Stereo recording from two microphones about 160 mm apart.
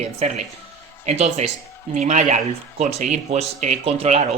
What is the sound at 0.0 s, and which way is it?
Speech, 45° right (ahead or behind).